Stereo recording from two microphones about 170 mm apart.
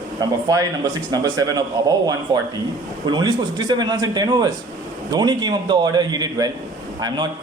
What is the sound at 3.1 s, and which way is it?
A man's voice, 25° right (ahead or behind).